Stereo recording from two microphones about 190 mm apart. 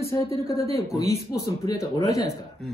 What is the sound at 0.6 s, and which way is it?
Speech, 15° left (ahead or behind).